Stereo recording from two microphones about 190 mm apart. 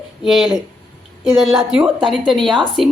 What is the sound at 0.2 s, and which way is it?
A woman's voice, centre (ahead or behind).